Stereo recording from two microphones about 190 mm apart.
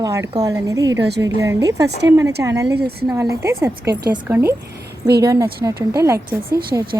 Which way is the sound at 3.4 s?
15° right (ahead or behind).